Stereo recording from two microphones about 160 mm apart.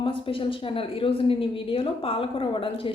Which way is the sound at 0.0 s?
35° left (ahead or behind).